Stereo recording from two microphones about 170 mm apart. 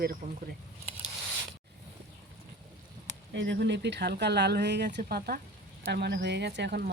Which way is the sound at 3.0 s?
90° right.